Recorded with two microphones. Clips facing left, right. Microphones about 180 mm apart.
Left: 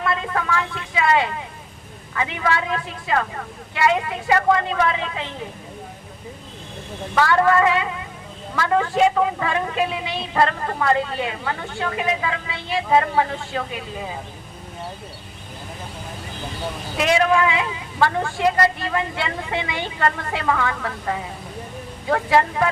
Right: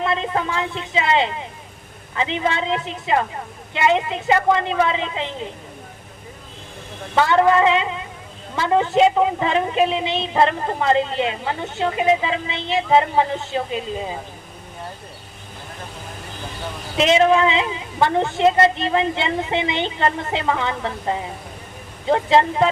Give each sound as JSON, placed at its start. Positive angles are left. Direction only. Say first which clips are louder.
{"t": 0.0, "sound": "a woman's voice", "louder": "right 2 dB", "side_deg": -20}
{"t": 7.2, "sound": "a woman's voice", "louder": "right 2 dB", "side_deg": -20}
{"t": 17.0, "sound": "a woman's voice", "louder": "right 3 dB", "side_deg": -25}